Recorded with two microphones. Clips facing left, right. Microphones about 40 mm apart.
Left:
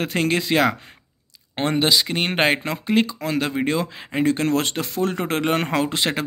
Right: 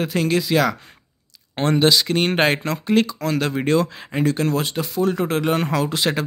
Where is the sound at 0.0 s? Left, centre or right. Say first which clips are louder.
Right 1 dB; left.